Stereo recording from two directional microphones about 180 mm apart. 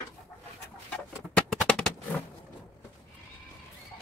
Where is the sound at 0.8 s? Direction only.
5° left (ahead or behind).